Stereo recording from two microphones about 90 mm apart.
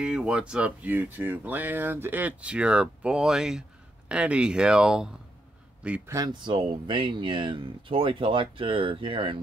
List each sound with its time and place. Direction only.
0.0 s speech: 10° right (ahead or behind)
6.2 s speech: 60° right (ahead or behind); by 9.4 s 75° right (ahead or behind)